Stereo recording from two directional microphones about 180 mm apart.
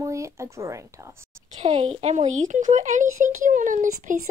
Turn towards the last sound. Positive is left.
turn(degrees=-45)  # may be behind; listen again after turning